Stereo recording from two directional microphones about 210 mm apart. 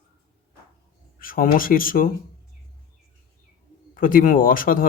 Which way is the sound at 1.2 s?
40° left (ahead or behind).